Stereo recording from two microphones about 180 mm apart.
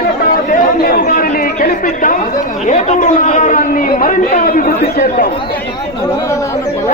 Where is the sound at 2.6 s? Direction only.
40° left (ahead or behind).